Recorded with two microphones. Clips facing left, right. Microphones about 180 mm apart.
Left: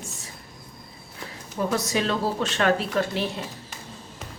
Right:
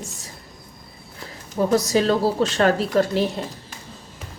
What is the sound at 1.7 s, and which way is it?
A woman's voice, 35° right (ahead or behind).